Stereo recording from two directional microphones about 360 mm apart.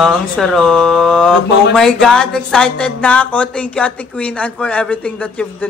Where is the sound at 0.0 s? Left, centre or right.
Centre.